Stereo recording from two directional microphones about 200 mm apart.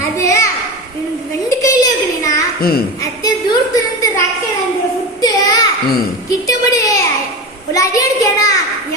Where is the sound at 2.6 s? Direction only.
50° left (ahead or behind).